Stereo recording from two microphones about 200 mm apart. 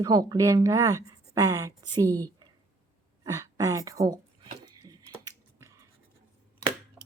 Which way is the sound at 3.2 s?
15° right (ahead or behind).